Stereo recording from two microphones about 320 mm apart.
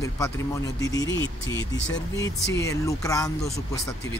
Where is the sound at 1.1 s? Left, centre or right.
Left.